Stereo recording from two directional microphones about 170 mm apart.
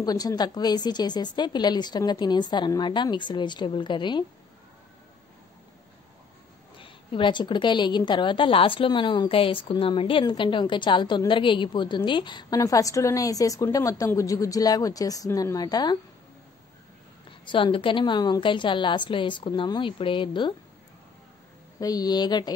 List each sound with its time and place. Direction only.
0.0 s a woman's voice: 20° left (ahead or behind)
6.8 s a woman's voice: 30° left (ahead or behind)
17.5 s a woman's voice: 30° left (ahead or behind)
21.7 s a woman's voice: 20° left (ahead or behind)